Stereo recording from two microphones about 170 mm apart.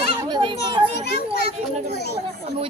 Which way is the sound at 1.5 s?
40° right (ahead or behind).